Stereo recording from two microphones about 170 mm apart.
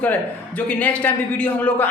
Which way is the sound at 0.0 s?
10° left (ahead or behind).